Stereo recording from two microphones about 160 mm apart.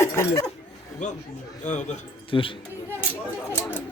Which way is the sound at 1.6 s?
50° left (ahead or behind).